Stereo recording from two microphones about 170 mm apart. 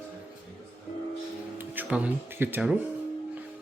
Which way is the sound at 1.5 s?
10° right (ahead or behind).